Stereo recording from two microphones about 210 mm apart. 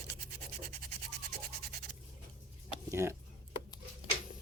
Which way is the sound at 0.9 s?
50° right (ahead or behind).